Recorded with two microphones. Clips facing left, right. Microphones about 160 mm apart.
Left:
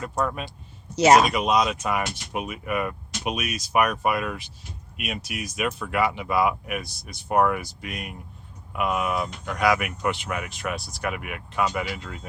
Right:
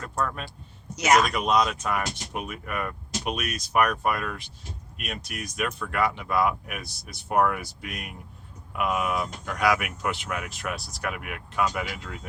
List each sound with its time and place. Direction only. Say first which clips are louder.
0.0 s speech: left 3 dB; 10° left (ahead or behind)
0.9 s speech: left 5 dB; 30° left (ahead or behind)
1.3 s speech: left 1 dB; 5° left (ahead or behind)